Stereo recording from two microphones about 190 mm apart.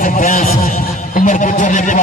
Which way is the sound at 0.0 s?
45° left (ahead or behind).